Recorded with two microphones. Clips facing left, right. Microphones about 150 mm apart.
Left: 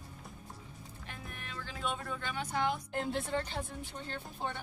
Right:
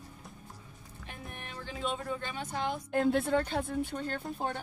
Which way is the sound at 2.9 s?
50° right (ahead or behind).